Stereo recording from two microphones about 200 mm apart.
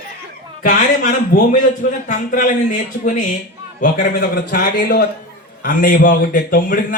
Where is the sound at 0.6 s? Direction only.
40° left (ahead or behind).